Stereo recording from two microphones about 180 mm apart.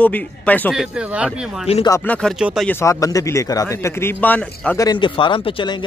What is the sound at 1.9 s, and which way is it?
Speech, 5° left (ahead or behind).